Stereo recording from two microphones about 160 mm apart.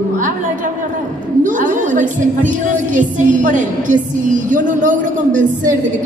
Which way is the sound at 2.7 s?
55° right (ahead or behind).